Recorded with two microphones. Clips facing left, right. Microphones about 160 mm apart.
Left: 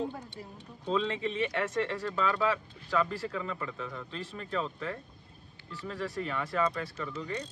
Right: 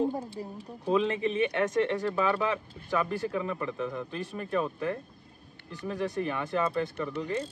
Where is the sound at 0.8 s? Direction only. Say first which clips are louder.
Right 4 dB; 20° right (ahead or behind).